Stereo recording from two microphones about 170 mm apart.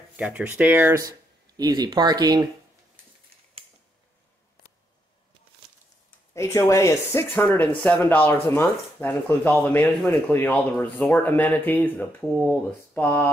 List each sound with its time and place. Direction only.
0.1 s speech: 10° right (ahead or behind); by 2.4 s 25° right (ahead or behind)
6.3 s speech: 15° left (ahead or behind)